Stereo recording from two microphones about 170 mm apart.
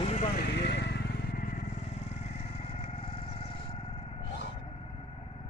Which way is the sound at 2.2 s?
35° left (ahead or behind).